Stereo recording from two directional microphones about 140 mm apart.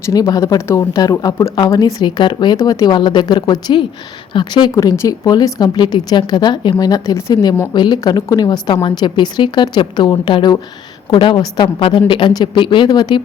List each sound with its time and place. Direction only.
0.0 s a woman's voice: 25° left (ahead or behind)